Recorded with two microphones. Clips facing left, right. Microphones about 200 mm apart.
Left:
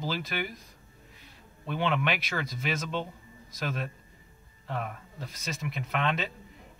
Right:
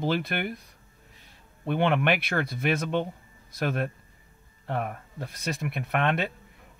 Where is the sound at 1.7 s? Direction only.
55° right (ahead or behind).